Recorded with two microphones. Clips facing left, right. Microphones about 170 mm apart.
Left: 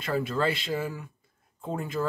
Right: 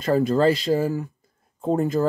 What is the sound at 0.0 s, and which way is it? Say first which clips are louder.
Speech: right 9 dB; 40° right (ahead or behind).